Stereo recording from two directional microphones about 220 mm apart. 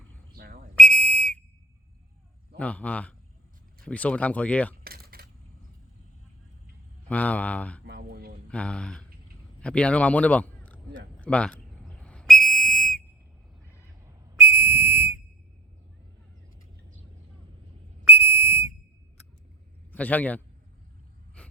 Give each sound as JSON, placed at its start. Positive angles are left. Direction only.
{"t": 0.3, "sound": "whistle", "side_deg": -40}
{"t": 0.8, "sound": "whistle", "side_deg": 5}
{"t": 2.6, "sound": "speech", "side_deg": 5}
{"t": 4.8, "sound": "typing", "side_deg": -45}
{"t": 7.1, "sound": "speech", "side_deg": 5}
{"t": 7.9, "sound": "a sound", "side_deg": -45}
{"t": 8.4, "sound": "speech", "side_deg": 5}
{"t": 11.2, "sound": "whistle", "side_deg": 5}
{"t": 14.3, "sound": "whistle", "side_deg": -10}
{"t": 18.0, "sound": "whistle", "side_deg": -10}
{"t": 19.9, "sound": "a man's voice", "side_deg": 5}
{"t": 21.4, "sound": "gasp", "side_deg": 5}